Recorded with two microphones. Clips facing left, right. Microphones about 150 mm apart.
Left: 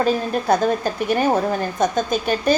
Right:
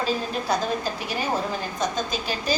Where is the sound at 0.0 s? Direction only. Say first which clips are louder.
Left 7 dB; 55° left (ahead or behind).